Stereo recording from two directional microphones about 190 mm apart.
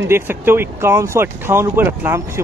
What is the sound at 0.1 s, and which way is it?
Speech, 10° right (ahead or behind).